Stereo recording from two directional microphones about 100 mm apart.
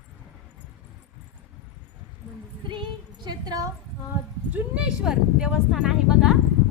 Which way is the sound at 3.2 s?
45° right (ahead or behind).